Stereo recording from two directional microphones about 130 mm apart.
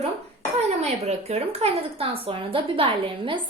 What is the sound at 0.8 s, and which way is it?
A woman's voice, 55° right (ahead or behind).